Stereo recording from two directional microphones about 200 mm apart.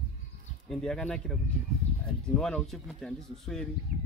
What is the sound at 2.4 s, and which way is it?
Speech, 5° left (ahead or behind).